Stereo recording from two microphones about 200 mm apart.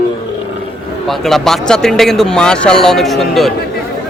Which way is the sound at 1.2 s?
Centre (ahead or behind).